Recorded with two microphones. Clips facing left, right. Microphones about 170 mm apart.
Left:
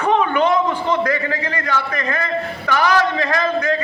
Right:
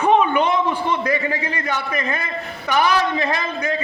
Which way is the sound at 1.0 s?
20° right (ahead or behind).